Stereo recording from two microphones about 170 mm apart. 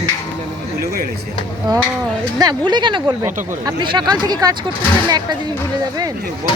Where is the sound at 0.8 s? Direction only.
60° right (ahead or behind).